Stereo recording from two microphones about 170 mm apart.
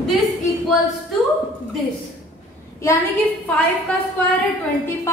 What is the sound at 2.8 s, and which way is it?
Speech, 15° left (ahead or behind).